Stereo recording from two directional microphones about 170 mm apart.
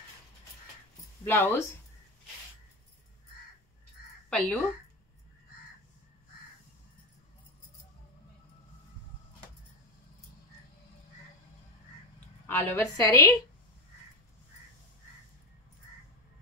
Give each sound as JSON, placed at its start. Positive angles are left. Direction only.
{"t": 1.2, "sound": "a woman's voice", "side_deg": 15}
{"t": 4.3, "sound": "speech", "side_deg": 5}
{"t": 12.4, "sound": "a woman's voice", "side_deg": 10}